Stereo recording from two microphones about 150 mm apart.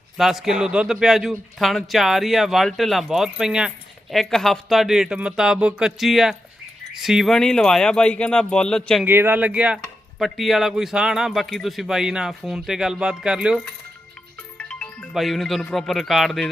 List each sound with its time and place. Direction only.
0.2 s speech: 5° right (ahead or behind)
9.0 s speech: 15° right (ahead or behind)
14.6 s speech: 5° left (ahead or behind)